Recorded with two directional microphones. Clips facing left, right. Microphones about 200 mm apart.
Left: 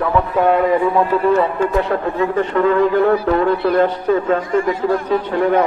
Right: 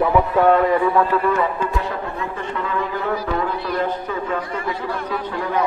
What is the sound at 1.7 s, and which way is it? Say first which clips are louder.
Speech: left 8 dB; 65° left (ahead or behind).